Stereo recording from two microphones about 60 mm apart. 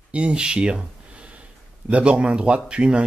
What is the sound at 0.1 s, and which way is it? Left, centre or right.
Speech, centre.